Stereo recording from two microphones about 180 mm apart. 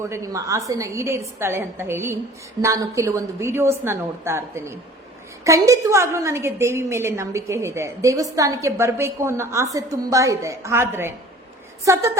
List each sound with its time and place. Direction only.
0.0 s a woman's voice: 15° right (ahead or behind)